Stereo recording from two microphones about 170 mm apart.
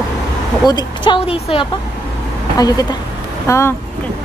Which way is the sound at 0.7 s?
25° left (ahead or behind).